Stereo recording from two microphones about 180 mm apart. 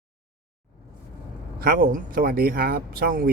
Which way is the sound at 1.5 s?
55° right (ahead or behind).